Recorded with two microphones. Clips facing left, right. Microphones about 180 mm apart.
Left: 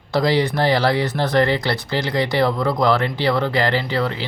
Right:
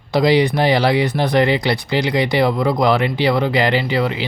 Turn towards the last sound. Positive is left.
turn(degrees=-15)  # may be behind; listen again after turning